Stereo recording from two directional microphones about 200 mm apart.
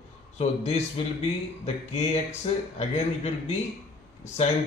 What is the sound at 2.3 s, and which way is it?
Speech, 30° left (ahead or behind).